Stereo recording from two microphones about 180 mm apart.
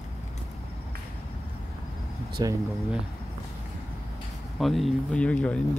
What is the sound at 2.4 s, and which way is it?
Speech, 25° right (ahead or behind).